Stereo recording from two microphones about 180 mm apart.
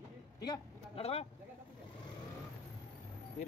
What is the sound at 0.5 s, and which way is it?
Speech, 35° left (ahead or behind).